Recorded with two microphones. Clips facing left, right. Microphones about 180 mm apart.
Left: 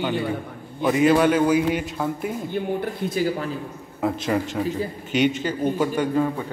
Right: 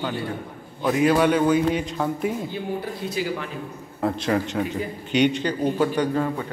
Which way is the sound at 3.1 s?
45° left (ahead or behind).